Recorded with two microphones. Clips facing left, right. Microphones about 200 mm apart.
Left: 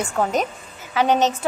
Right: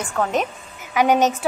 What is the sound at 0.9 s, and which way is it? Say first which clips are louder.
Speech: right 1 dB; 15° right (ahead or behind).